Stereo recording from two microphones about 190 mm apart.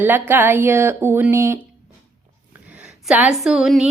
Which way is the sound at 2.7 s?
5° right (ahead or behind).